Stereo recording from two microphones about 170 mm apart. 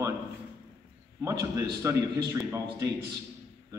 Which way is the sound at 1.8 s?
15° right (ahead or behind).